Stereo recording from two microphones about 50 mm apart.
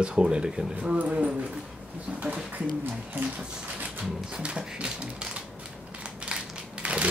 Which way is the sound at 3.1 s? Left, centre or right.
Right.